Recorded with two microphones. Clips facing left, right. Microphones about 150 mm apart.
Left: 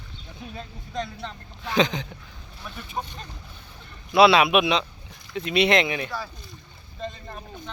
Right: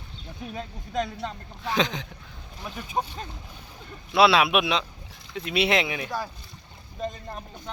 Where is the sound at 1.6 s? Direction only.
Centre (ahead or behind).